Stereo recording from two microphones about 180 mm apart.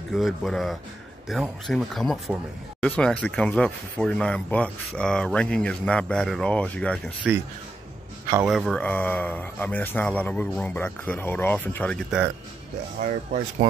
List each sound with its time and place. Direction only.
0.1 s speech: centre (ahead or behind)
7.3 s speech: 5° right (ahead or behind)
8.5 s speech: centre (ahead or behind)
13.0 s speech: 40° right (ahead or behind)